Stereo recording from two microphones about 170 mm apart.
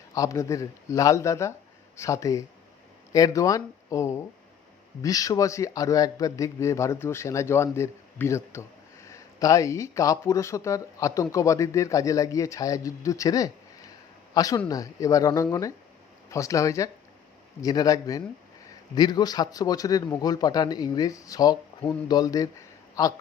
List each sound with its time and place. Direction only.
0.1 s a man's voice: 20° left (ahead or behind)